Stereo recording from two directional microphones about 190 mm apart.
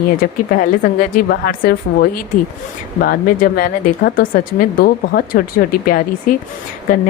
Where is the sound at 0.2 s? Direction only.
50° left (ahead or behind).